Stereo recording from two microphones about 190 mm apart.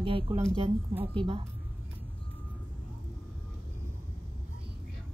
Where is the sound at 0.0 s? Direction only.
25° right (ahead or behind).